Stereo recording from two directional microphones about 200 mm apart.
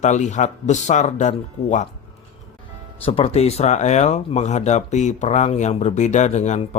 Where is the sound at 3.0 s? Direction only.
30° left (ahead or behind).